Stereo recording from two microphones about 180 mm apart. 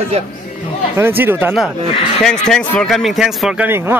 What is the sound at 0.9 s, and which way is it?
Speech, 10° right (ahead or behind).